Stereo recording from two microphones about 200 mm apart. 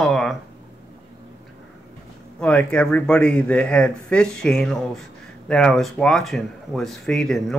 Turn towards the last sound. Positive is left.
turn(degrees=0)  # may be behind; listen again after turning